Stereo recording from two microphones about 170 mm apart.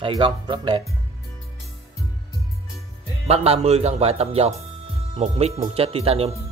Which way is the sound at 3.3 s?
40° right (ahead or behind).